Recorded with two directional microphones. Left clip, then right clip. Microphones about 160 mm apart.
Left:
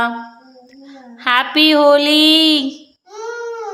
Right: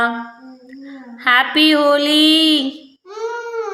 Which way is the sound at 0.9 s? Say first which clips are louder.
Right 2 dB; 15° left (ahead or behind).